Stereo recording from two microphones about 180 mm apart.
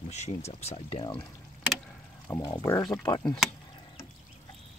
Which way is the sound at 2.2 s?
10° left (ahead or behind).